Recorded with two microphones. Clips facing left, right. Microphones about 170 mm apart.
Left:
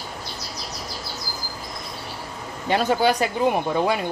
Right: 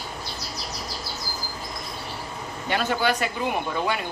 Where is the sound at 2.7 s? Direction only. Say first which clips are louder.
Left 4 dB; 35° left (ahead or behind).